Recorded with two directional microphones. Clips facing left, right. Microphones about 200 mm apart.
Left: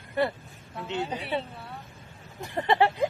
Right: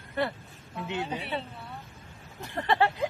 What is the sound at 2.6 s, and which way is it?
Speech, 15° left (ahead or behind).